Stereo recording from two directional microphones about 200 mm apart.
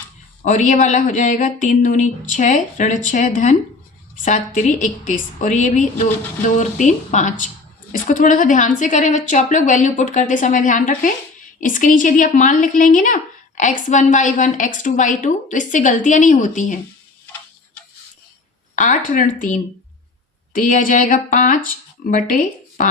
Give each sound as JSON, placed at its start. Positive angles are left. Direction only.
{"t": 0.4, "sound": "a woman's voice", "side_deg": 40}
{"t": 18.8, "sound": "a woman's voice", "side_deg": 40}